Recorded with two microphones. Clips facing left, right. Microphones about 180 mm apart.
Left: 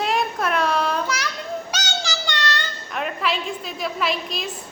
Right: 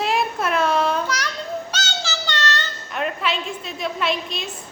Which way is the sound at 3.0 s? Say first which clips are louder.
Right 1 dB; centre (ahead or behind).